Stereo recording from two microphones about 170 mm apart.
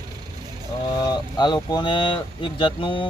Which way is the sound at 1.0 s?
25° left (ahead or behind).